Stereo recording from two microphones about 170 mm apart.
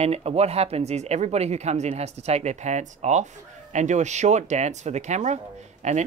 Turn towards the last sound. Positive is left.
turn(degrees=-40)  # may be behind; listen again after turning